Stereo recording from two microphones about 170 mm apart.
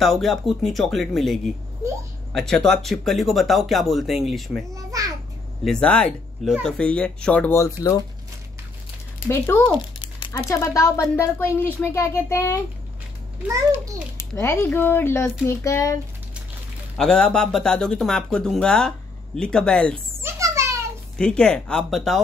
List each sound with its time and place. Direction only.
0.0 s speech: centre (ahead or behind)
4.7 s a child's voice: 20° right (ahead or behind)
5.6 s speech: 5° left (ahead or behind)
9.6 s a sound: 30° left (ahead or behind)
10.3 s speech: 15° left (ahead or behind)
14.1 s speech: 15° left (ahead or behind)
16.9 s speech: 5° left (ahead or behind)
20.2 s a sound: 15° right (ahead or behind)
21.2 s speech: 5° left (ahead or behind)